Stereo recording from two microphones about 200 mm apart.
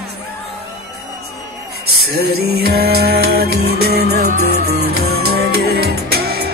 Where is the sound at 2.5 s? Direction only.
50° right (ahead or behind).